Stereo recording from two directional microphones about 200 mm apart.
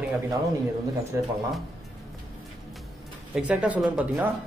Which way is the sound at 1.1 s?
15° right (ahead or behind).